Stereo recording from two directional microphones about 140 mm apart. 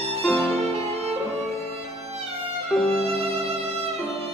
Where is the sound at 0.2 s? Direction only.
10° left (ahead or behind).